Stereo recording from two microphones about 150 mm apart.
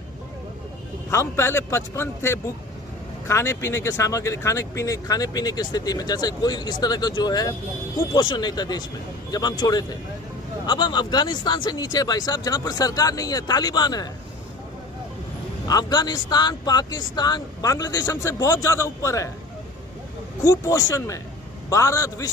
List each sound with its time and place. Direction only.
1.1 s a man's voice: 20° left (ahead or behind)
15.6 s speech: 25° left (ahead or behind)
20.4 s speech: 25° left (ahead or behind)